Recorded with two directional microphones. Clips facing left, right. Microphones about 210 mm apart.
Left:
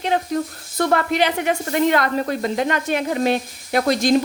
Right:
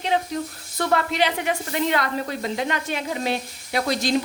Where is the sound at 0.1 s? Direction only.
50° left (ahead or behind).